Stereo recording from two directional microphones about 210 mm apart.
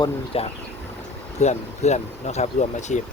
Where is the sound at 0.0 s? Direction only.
25° left (ahead or behind).